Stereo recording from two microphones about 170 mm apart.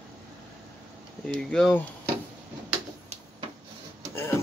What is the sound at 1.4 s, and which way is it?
Speech, 5° left (ahead or behind).